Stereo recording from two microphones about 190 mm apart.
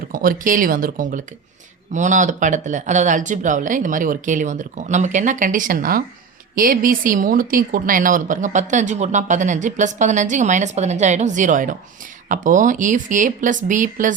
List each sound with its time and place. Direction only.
0.1 s speech: 45° right (ahead or behind)